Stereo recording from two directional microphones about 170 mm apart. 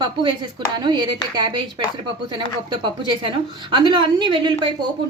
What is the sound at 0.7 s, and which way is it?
A woman's voice, 25° right (ahead or behind).